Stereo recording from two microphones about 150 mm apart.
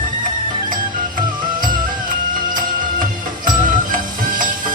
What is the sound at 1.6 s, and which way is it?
Music, 65° right (ahead or behind).